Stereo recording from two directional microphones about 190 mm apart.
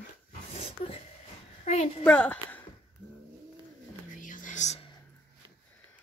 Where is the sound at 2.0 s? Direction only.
5° left (ahead or behind).